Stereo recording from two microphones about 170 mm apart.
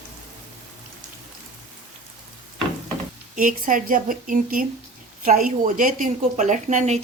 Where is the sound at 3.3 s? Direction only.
50° right (ahead or behind).